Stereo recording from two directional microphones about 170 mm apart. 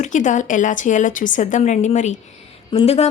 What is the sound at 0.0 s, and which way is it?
A woman's voice, 50° left (ahead or behind).